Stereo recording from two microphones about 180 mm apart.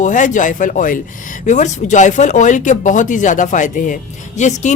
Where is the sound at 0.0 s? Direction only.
45° left (ahead or behind).